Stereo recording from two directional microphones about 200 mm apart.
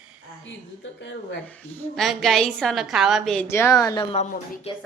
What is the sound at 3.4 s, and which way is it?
Speech, 15° left (ahead or behind).